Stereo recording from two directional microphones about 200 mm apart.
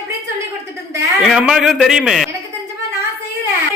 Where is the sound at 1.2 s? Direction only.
Centre (ahead or behind).